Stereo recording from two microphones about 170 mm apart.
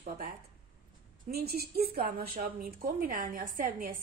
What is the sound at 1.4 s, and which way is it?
A woman's voice, 65° right (ahead or behind).